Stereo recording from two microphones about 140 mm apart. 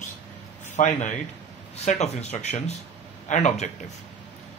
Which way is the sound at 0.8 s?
60° left (ahead or behind).